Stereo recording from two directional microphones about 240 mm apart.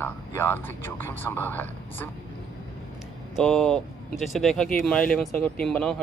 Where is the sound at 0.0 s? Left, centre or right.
Centre.